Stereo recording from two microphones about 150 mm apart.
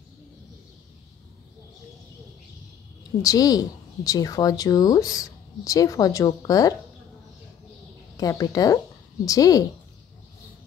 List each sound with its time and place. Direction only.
3.2 s a woman's voice: 25° left (ahead or behind)
8.2 s speech: 25° left (ahead or behind)